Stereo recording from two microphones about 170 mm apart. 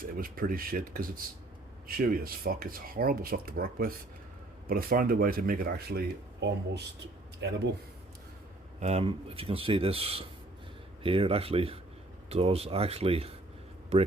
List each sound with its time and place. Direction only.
0.0 s speech: 55° right (ahead or behind); by 6.8 s 80° right
8.8 s speech: 40° right (ahead or behind)